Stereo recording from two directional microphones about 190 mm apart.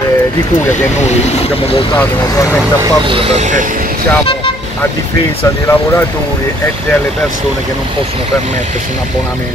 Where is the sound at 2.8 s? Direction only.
25° right (ahead or behind); by 3.9 s 45° right (ahead or behind).